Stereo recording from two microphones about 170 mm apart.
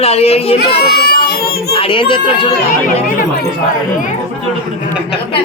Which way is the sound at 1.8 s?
30° left (ahead or behind).